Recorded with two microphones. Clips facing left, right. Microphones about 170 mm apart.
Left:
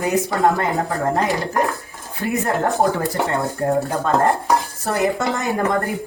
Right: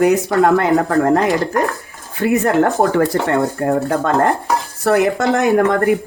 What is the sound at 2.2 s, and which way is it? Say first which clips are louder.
Speech: right 6 dB; 65° right (ahead or behind).